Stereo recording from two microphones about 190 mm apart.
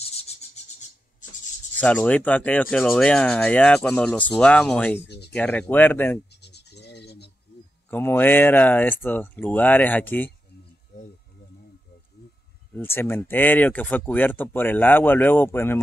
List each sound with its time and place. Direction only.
0.1 s a sound: 35° left (ahead or behind)
1.8 s speech: 5° left (ahead or behind)
5.0 s speech: 60° left (ahead or behind)
5.3 s speech: 5° left (ahead or behind)
6.3 s scratch: 60° left (ahead or behind)
7.9 s speech: 10° left (ahead or behind)
12.2 s a sound: 55° left (ahead or behind)
12.7 s speech: 10° left (ahead or behind)